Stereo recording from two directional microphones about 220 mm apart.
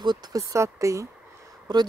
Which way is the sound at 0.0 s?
20° right (ahead or behind).